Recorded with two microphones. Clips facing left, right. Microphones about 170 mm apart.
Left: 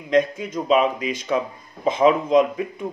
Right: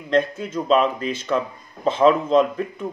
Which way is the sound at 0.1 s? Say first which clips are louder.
Left 1 dB; 10° left (ahead or behind).